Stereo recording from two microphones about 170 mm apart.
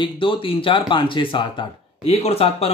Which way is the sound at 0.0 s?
30° left (ahead or behind).